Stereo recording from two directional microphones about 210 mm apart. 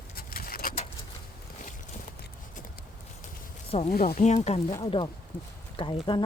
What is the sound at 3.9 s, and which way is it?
Speech, 45° left (ahead or behind).